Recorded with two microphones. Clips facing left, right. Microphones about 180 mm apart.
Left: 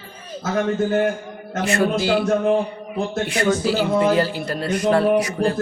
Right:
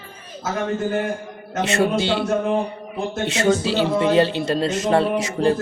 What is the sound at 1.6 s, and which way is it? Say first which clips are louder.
Speech: even; 25° right (ahead or behind).